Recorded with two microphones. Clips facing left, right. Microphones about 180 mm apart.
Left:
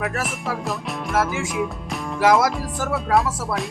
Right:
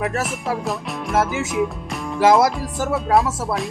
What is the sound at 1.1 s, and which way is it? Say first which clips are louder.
Music: right 2 dB; 20° right (ahead or behind).